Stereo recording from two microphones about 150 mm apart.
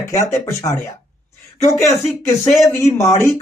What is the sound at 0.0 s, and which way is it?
Speech, 20° left (ahead or behind).